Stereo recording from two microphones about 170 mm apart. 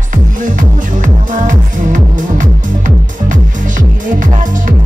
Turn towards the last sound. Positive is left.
turn(degrees=-50)  # may be behind; listen again after turning